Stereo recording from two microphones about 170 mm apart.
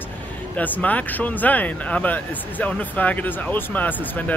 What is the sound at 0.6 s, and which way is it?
Speech, 10° left (ahead or behind).